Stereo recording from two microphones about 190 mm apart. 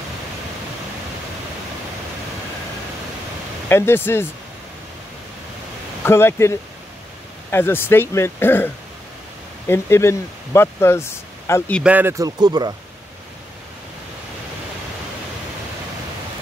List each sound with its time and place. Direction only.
3.6 s speech: 10° left (ahead or behind)
6.0 s speech: 15° left (ahead or behind)
11.8 s speech: 10° right (ahead or behind)